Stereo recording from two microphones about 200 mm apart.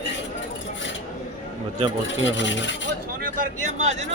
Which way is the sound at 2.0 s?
65° left (ahead or behind).